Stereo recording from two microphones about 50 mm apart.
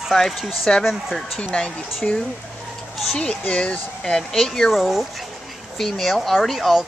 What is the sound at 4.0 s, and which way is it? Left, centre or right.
Speech, centre.